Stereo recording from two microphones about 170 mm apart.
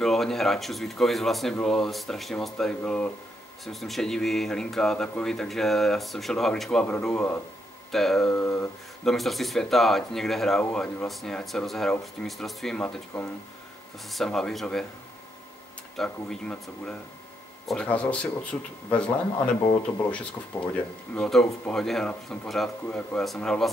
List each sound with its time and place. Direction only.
0.0 s speech: centre (ahead or behind)
8.4 s speech: 15° left (ahead or behind)
9.0 s speech: centre (ahead or behind)
14.0 s speech: centre (ahead or behind)
16.0 s speech: 5° left (ahead or behind)
20.5 s speech: 15° left (ahead or behind)